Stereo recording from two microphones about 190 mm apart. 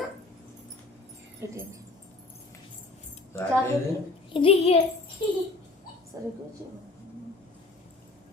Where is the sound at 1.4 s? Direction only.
15° right (ahead or behind).